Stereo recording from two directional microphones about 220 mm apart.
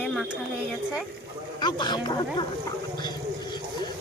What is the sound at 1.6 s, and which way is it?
Speech, 20° left (ahead or behind).